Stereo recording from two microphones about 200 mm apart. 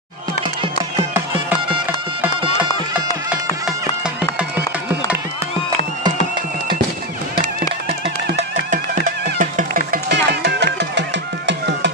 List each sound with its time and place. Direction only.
8.4 s music: 40° right (ahead or behind); by 11.9 s 60° right (ahead or behind)